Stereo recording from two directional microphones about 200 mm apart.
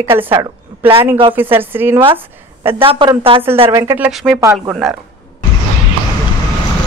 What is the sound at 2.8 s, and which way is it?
Speech, 25° right (ahead or behind).